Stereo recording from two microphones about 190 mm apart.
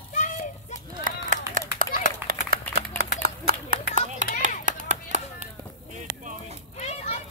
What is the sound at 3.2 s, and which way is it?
Clapping, 50° right (ahead or behind).